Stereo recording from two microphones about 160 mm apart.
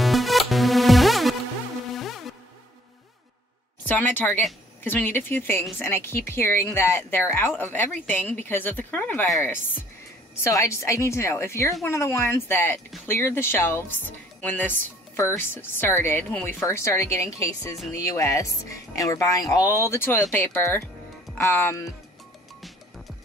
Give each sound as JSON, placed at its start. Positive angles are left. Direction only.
{"t": 0.0, "sound": "music", "side_deg": 0}
{"t": 3.8, "sound": "speech", "side_deg": 10}